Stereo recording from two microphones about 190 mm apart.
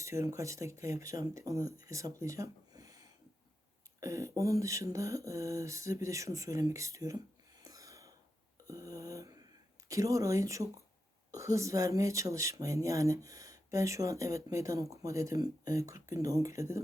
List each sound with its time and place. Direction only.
0.0 s speech: 15° right (ahead or behind)
7.6 s a sound: 15° right (ahead or behind)
9.9 s speech: 15° right (ahead or behind)